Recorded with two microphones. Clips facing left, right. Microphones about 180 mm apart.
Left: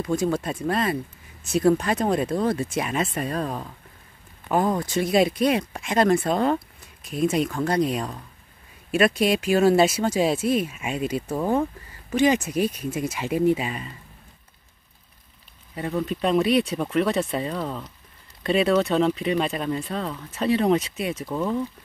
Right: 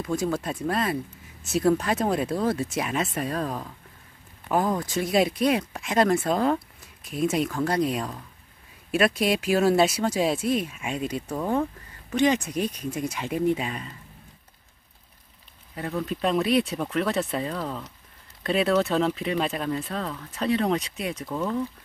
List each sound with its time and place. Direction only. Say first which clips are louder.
0.0 s speech: left 3 dB; centre (ahead or behind)
15.7 s speech: left 3 dB; 5° left (ahead or behind)